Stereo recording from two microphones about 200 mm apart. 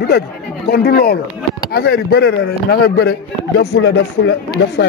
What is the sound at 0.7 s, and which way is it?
Speech, 55° left (ahead or behind).